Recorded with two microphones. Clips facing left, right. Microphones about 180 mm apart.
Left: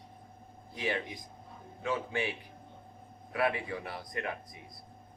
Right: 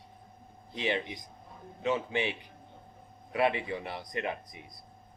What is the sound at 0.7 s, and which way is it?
A man's voice, 25° right (ahead or behind).